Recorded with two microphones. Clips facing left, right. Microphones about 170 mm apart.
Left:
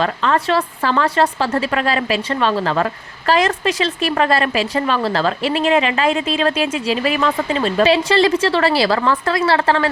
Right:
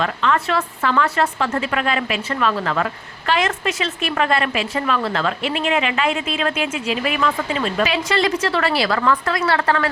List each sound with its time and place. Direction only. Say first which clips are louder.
0.0 s a woman's voice: left 2 dB; 35° left (ahead or behind)